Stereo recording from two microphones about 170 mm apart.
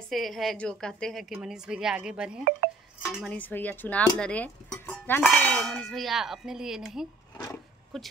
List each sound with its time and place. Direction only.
0.1 s speech: centre (ahead or behind)
2.6 s speech: 70° right (ahead or behind)
3.1 s speech: 5° right (ahead or behind)
3.3 s speech: 10° left (ahead or behind)
7.3 s a sound: 20° left (ahead or behind)
7.9 s speech: centre (ahead or behind)